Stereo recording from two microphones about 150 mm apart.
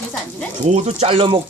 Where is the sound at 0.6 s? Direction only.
45° right (ahead or behind).